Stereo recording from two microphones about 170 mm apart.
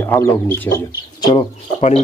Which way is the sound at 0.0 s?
15° left (ahead or behind).